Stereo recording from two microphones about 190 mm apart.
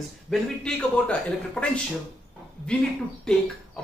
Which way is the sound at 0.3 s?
5° left (ahead or behind).